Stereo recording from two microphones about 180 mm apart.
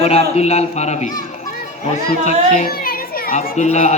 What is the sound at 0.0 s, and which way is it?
Speech, 35° left (ahead or behind).